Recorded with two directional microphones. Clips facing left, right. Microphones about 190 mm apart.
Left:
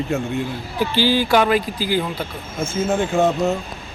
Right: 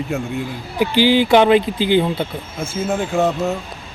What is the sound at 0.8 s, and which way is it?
Speech, 15° right (ahead or behind).